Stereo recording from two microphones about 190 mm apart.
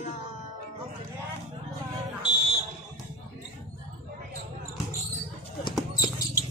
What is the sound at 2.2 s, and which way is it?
Fire alarm, 25° left (ahead or behind).